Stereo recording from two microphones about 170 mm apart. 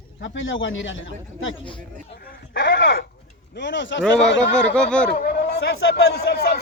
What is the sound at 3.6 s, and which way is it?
Speech, 90° left.